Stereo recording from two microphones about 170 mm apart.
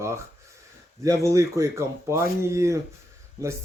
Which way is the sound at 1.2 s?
15° right (ahead or behind).